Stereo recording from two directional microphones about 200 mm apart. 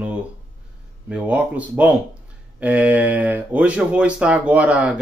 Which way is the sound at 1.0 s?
5° right (ahead or behind).